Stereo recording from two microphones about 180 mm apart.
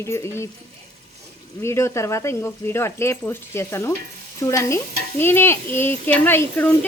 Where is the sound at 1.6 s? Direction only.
15° left (ahead or behind).